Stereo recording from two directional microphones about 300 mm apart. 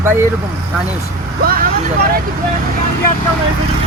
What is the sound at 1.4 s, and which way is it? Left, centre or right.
Vehicle, right.